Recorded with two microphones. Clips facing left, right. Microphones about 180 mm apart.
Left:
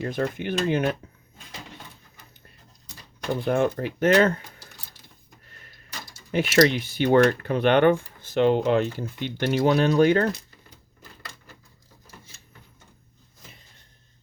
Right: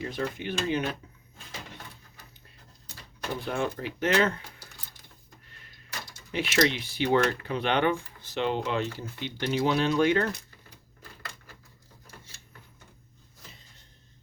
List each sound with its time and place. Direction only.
0.0 s speech: 55° left (ahead or behind)
3.4 s speech: 50° left (ahead or behind)
6.3 s speech: 50° left (ahead or behind)